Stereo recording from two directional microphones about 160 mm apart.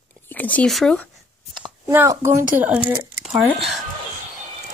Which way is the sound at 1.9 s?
15° right (ahead or behind).